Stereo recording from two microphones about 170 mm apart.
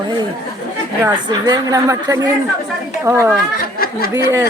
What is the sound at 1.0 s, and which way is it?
A woman's voice, 25° right (ahead or behind).